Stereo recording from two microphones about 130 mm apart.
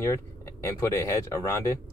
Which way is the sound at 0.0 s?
25° left (ahead or behind).